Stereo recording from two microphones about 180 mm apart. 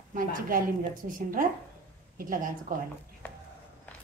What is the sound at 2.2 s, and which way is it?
Speech, 50° right (ahead or behind).